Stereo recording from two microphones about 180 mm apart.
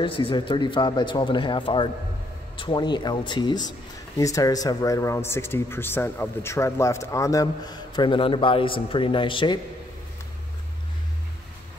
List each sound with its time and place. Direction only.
0.0 s speech: 30° left (ahead or behind)